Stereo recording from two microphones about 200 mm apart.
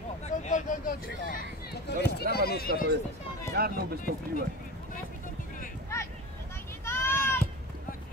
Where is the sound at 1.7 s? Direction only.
55° left (ahead or behind).